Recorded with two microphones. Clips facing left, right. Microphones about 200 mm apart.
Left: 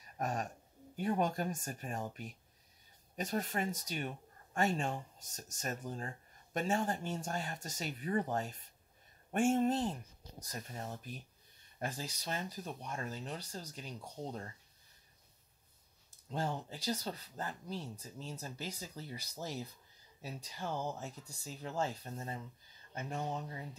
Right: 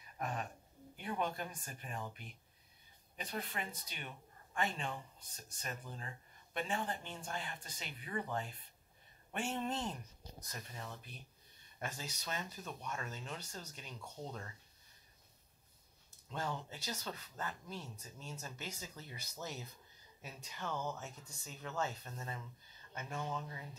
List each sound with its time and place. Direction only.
0.0 s a sound: 45° left (ahead or behind)
0.9 s speech: 40° left (ahead or behind)
11.8 s speech: 35° left (ahead or behind)
16.3 s speech: 35° left (ahead or behind)